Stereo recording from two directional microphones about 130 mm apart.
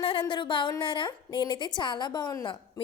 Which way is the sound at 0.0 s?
40° left (ahead or behind).